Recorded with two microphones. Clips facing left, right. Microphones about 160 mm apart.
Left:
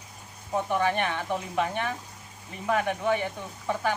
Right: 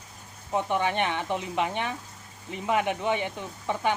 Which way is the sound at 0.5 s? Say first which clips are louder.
Even; 20° right (ahead or behind).